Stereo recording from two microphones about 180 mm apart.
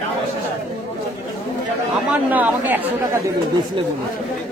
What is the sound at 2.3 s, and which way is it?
Speech, 10° right (ahead or behind).